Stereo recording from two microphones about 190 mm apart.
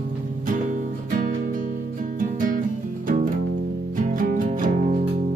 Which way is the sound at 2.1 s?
45° right (ahead or behind).